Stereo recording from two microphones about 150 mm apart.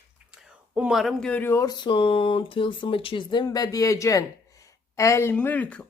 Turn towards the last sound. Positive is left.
turn(degrees=10)  # may be behind; listen again after turning